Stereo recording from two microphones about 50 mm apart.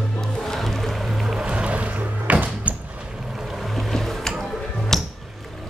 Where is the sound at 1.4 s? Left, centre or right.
Right.